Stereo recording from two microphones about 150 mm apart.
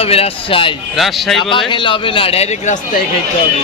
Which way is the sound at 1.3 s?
35° left (ahead or behind).